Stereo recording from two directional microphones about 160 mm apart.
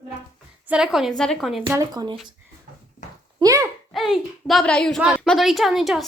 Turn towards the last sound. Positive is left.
turn(degrees=0)  # may be behind; listen again after turning